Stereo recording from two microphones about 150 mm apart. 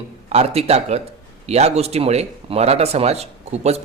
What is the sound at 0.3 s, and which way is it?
A man's voice, 45° right (ahead or behind).